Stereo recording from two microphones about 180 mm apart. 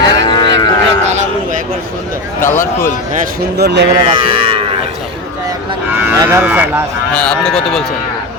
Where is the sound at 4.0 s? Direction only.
30° right (ahead or behind).